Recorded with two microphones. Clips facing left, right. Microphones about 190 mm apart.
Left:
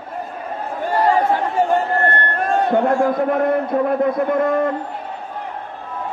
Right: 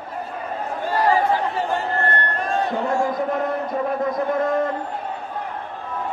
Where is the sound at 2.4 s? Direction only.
55° left (ahead or behind).